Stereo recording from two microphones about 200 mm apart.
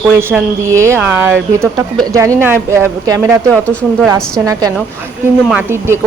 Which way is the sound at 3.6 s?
5° left (ahead or behind).